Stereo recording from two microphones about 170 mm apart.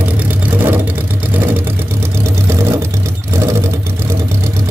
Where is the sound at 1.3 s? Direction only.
10° right (ahead or behind).